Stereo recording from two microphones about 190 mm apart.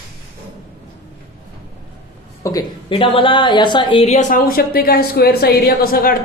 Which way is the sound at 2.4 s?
20° left (ahead or behind).